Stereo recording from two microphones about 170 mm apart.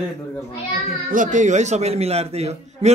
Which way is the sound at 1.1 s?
45° right (ahead or behind).